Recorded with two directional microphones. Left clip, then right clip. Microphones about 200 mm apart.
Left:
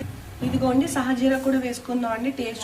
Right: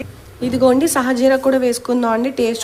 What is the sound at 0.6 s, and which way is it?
A woman's voice, 55° right (ahead or behind).